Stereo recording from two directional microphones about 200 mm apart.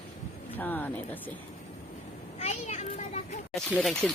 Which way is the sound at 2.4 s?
35° left (ahead or behind).